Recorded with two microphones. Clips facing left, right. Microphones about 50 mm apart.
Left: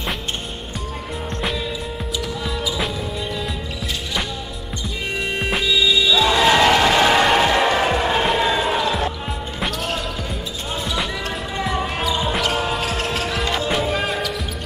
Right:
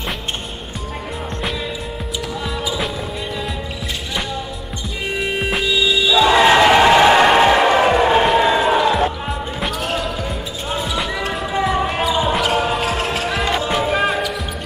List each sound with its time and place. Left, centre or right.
5.2 s music: centre
6.0 s music: centre
8.4 s basketball bounce: centre